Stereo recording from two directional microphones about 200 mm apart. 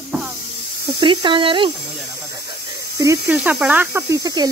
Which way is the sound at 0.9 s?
25° right (ahead or behind).